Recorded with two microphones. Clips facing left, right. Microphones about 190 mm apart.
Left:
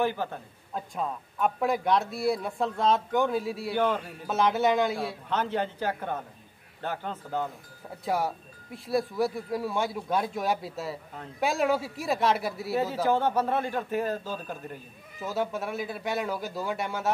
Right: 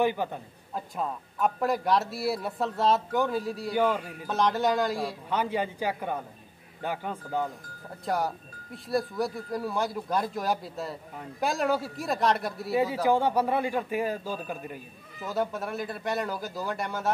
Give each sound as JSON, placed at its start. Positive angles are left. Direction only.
{"t": 0.0, "sound": "a man's voice", "side_deg": -15}
{"t": 0.7, "sound": "speech", "side_deg": 0}
{"t": 3.7, "sound": "a man's voice", "side_deg": -10}
{"t": 4.3, "sound": "speech", "side_deg": 5}
{"t": 5.3, "sound": "a man's voice", "side_deg": -10}
{"t": 8.0, "sound": "speech", "side_deg": 0}
{"t": 13.0, "sound": "a man's voice", "side_deg": -10}
{"t": 15.2, "sound": "speech", "side_deg": 0}